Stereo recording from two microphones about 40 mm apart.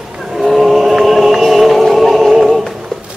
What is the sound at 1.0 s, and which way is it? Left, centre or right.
Music, centre.